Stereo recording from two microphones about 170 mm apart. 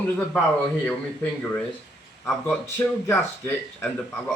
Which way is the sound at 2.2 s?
5° left (ahead or behind).